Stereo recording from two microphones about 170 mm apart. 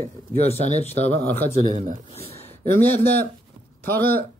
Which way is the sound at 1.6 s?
45° right (ahead or behind).